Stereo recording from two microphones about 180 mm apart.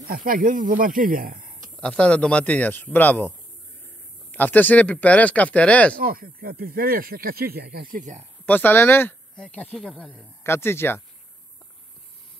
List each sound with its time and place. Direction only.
0.0 s speech: 55° right (ahead or behind)
1.8 s speech: 5° left (ahead or behind)
5.9 s speech: 55° right (ahead or behind)
8.5 s speech: 10° left (ahead or behind)